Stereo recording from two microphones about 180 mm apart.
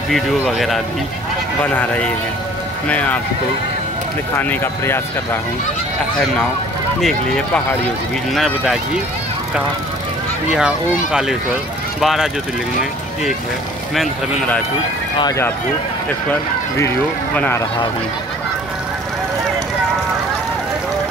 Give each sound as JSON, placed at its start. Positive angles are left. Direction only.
{"t": 0.1, "sound": "speech", "side_deg": 0}
{"t": 4.4, "sound": "speech", "side_deg": 10}
{"t": 7.0, "sound": "speech", "side_deg": 0}
{"t": 10.5, "sound": "speech", "side_deg": -5}
{"t": 15.1, "sound": "speech", "side_deg": 20}